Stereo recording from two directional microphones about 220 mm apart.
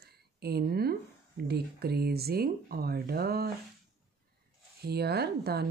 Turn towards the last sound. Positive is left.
turn(degrees=-45)  # may be behind; listen again after turning